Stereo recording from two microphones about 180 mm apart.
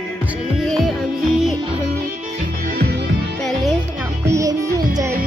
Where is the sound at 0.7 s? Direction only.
Centre (ahead or behind).